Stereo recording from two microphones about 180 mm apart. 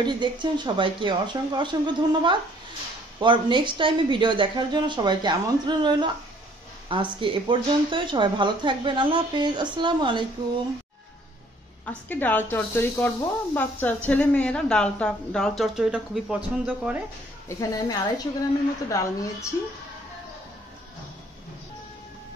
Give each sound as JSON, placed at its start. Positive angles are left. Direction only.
{"t": 0.0, "sound": "a woman's voice", "side_deg": -25}
{"t": 11.8, "sound": "speech", "side_deg": 10}
{"t": 17.5, "sound": "speech", "side_deg": 15}